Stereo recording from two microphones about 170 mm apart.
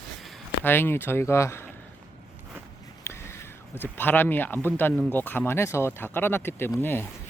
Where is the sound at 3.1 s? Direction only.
15° left (ahead or behind).